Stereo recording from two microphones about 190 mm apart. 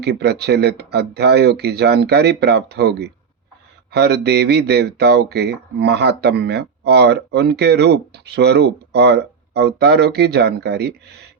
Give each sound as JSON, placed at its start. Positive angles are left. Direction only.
{"t": 0.0, "sound": "speech", "side_deg": -60}